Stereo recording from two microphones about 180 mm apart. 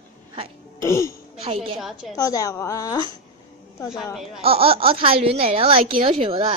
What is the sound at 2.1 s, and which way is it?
Speech, 20° left (ahead or behind).